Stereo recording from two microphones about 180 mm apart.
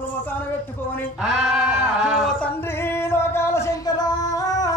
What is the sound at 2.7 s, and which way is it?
Singing, 15° left (ahead or behind).